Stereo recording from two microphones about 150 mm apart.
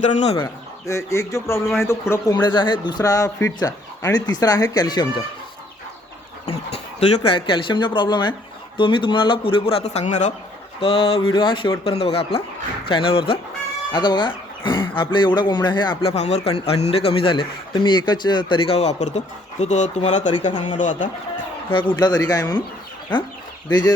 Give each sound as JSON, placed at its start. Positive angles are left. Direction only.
{"t": 0.0, "sound": "speech", "side_deg": 50}
{"t": 0.4, "sound": "speech", "side_deg": 20}
{"t": 7.3, "sound": "a man's voice", "side_deg": 35}
{"t": 10.8, "sound": "a man's voice", "side_deg": 35}
{"t": 16.1, "sound": "a man's voice", "side_deg": 45}
{"t": 20.3, "sound": "a man's voice", "side_deg": 30}
{"t": 20.7, "sound": "a man's voice", "side_deg": 60}
{"t": 21.7, "sound": "speech", "side_deg": 35}